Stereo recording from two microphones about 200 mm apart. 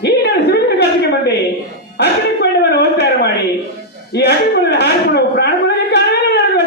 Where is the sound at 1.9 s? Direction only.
55° left (ahead or behind).